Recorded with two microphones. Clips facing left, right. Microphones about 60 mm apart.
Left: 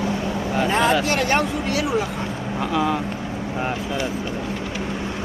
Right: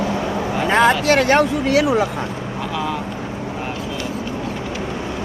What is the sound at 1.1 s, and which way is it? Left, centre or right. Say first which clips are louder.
Speech: right 6 dB; right.